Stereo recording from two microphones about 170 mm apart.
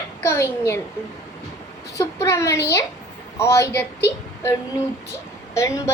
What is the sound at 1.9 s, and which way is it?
A woman's voice, 15° left (ahead or behind).